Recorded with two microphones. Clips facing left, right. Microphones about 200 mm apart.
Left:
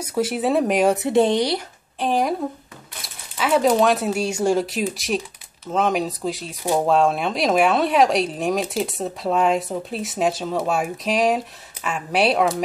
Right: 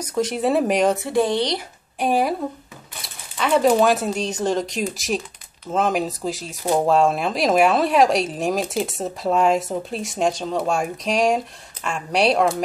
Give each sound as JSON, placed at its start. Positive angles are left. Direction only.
{"t": 0.0, "sound": "speech", "side_deg": 5}
{"t": 0.8, "sound": "speech", "side_deg": 20}
{"t": 2.0, "sound": "speech", "side_deg": -10}
{"t": 3.0, "sound": "speech", "side_deg": 5}